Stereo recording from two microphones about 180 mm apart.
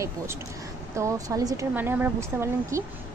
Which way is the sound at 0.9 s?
15° right (ahead or behind).